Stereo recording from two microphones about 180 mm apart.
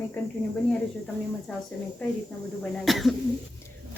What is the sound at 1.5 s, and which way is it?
A woman's voice, 5° left (ahead or behind).